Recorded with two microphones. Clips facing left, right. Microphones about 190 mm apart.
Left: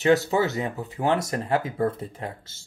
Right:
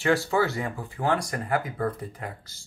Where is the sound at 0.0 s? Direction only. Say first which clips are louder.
Left 3 dB; 20° left (ahead or behind).